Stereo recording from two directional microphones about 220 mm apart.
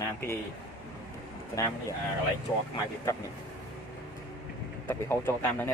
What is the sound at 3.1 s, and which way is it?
Speech, 15° left (ahead or behind).